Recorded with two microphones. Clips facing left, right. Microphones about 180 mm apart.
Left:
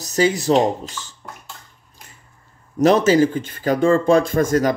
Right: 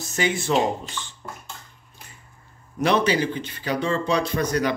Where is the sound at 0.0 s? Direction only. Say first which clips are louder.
Left 7 dB; 40° left (ahead or behind).